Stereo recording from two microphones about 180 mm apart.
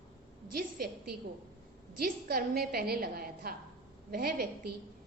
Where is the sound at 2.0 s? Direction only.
60° right (ahead or behind).